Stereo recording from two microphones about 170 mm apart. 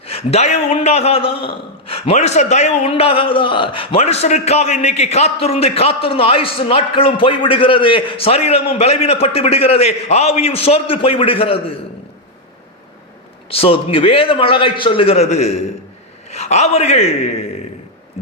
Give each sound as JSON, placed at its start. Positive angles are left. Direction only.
{"t": 0.0, "sound": "a man's voice", "side_deg": 35}
{"t": 13.5, "sound": "a man's voice", "side_deg": 35}